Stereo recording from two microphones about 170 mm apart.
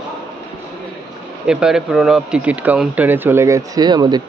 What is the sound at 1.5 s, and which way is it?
Speech, 5° right (ahead or behind).